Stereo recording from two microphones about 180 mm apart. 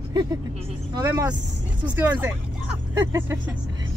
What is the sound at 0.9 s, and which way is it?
Speech, 20° right (ahead or behind).